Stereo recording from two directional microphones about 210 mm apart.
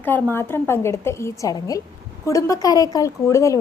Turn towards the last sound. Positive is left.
turn(degrees=15)  # may be behind; listen again after turning